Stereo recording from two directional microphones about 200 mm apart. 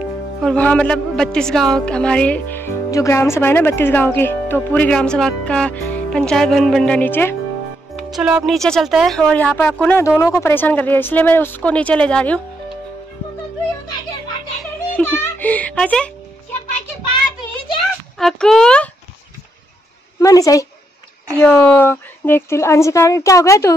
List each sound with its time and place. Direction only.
0.4 s a woman's voice: 5° left (ahead or behind)
8.1 s speech: 5° right (ahead or behind)
14.6 s a sound: 5° left (ahead or behind)
18.1 s a woman's voice: centre (ahead or behind)
20.2 s speech: 15° left (ahead or behind)